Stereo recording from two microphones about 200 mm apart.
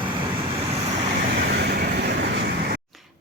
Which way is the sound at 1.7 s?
55° right (ahead or behind).